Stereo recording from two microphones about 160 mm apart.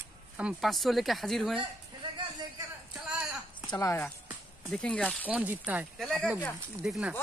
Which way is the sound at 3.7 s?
20° left (ahead or behind).